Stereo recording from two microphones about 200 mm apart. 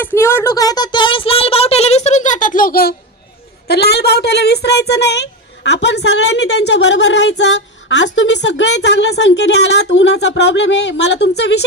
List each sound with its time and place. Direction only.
0.0 s a child's voice: 10° left (ahead or behind); by 11.6 s 60° left (ahead or behind)